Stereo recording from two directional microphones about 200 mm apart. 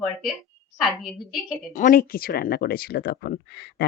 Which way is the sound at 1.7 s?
40° left (ahead or behind).